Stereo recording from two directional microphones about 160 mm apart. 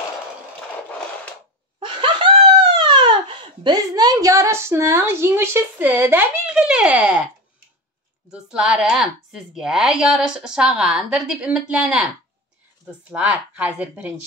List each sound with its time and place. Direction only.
1.8 s laughter: 30° right (ahead or behind)
2.8 s a child's voice: 30° right (ahead or behind); by 7.2 s 10° right (ahead or behind)
8.3 s a woman's voice: 5° right (ahead or behind)
13.1 s speech: 10° right (ahead or behind)